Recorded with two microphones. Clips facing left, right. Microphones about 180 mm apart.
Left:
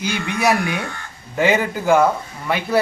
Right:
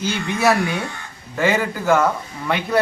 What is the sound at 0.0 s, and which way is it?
A man's voice, 15° left (ahead or behind).